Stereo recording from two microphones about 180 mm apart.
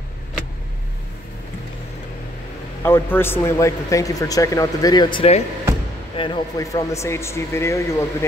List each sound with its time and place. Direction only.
2.8 s speech: 10° left (ahead or behind)